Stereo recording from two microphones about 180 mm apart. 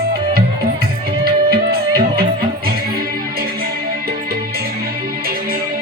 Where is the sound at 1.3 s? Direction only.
55° right (ahead or behind).